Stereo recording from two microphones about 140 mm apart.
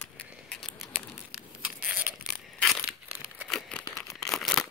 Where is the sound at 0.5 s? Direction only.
5° left (ahead or behind).